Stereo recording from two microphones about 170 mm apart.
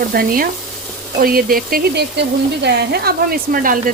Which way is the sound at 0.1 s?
60° right (ahead or behind).